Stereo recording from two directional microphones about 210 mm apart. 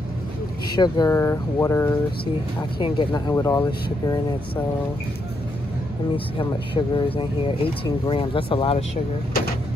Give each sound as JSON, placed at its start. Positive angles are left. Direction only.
{"t": 0.7, "sound": "speech", "side_deg": 20}
{"t": 6.1, "sound": "speech", "side_deg": 25}